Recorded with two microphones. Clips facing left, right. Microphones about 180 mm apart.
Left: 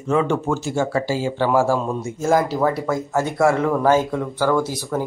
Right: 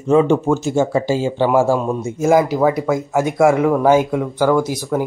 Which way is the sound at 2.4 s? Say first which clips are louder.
Right 4 dB; 5° right (ahead or behind).